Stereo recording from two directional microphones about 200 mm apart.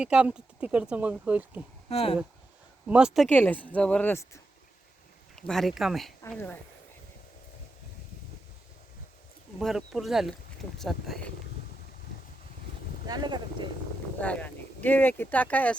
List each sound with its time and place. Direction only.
0.0 s speech: 5° right (ahead or behind)
1.9 s speech: 30° left (ahead or behind)
2.8 s speech: 5° right (ahead or behind)
3.2 s a woman's voice: 10° left (ahead or behind)
5.4 s speech: centre (ahead or behind)
9.6 s speech: centre (ahead or behind)
13.1 s speech: 20° right (ahead or behind)
14.2 s speech: 5° left (ahead or behind)